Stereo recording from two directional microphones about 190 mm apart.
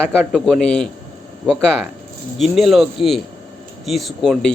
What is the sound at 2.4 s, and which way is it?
Speech, centre (ahead or behind).